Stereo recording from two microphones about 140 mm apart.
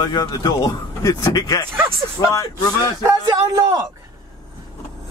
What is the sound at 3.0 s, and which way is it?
Speech, 25° right (ahead or behind).